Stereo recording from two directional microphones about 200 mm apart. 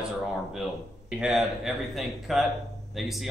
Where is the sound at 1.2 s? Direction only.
Centre (ahead or behind).